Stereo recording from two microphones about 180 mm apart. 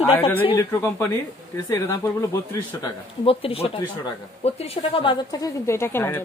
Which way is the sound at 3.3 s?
30° left (ahead or behind).